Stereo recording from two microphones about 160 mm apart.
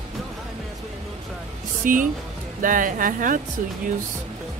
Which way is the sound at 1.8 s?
55° right (ahead or behind).